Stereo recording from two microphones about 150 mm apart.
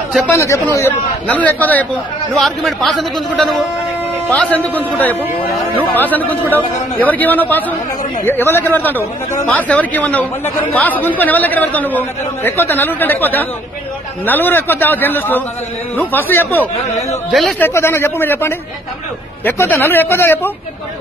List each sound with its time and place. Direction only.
0.4 s speech: 20° left (ahead or behind)
2.3 s a man's voice: centre (ahead or behind)
17.3 s a man's voice: centre (ahead or behind)
17.6 s speech: 15° left (ahead or behind)